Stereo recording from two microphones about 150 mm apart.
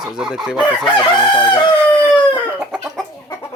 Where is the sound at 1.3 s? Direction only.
30° left (ahead or behind).